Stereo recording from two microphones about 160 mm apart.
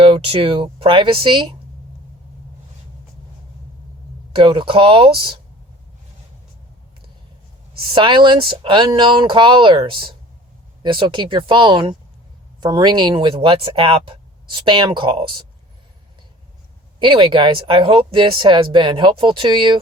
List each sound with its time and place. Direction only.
0.0 s speech: 35° right (ahead or behind)
4.3 s speech: 35° right (ahead or behind)
7.9 s speech: 30° right (ahead or behind)
17.0 s speech: 30° right (ahead or behind)